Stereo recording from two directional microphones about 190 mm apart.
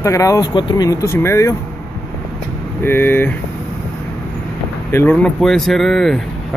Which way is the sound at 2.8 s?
10° left (ahead or behind).